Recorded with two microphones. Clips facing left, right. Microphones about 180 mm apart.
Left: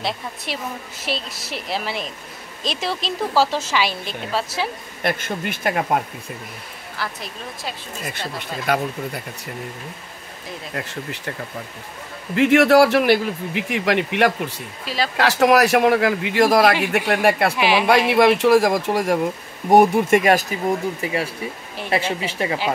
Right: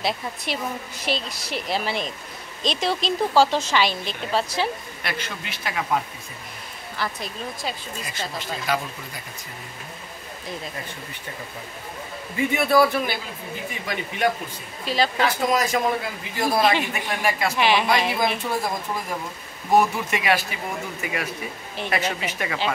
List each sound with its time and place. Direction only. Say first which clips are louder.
0.0 s a woman's voice: even; centre (ahead or behind)
5.0 s speech: left 9 dB; 50° left (ahead or behind)
7.0 s a woman's voice: right 1 dB; 5° left (ahead or behind)
8.1 s speech: left 1 dB; 60° left (ahead or behind)
10.7 s speech: left 6 dB; 80° left
12.4 s speech: left 6 dB; 90° left
16.9 s speech: left 8 dB; 65° left (ahead or behind)
17.6 s a woman's voice: left 2 dB; 5° left (ahead or behind)
18.1 s speech: left 11 dB; 75° left (ahead or behind)
19.7 s speech: left 7 dB; 55° left (ahead or behind)
21.0 s a woman's voice: left 5 dB; 30° left (ahead or behind)